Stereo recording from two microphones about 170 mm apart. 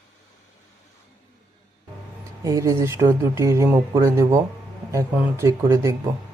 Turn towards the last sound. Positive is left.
turn(degrees=-20)  # may be behind; listen again after turning